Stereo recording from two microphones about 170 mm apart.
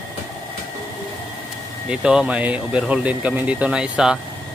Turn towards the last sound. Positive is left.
turn(degrees=-5)  # may be behind; listen again after turning